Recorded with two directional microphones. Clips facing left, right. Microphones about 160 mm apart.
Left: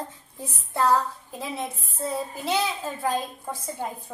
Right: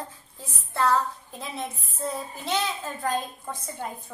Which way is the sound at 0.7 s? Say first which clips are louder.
Left 1 dB; 15° left (ahead or behind).